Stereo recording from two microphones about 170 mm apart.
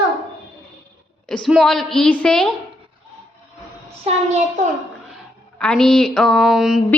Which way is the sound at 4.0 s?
40° right (ahead or behind).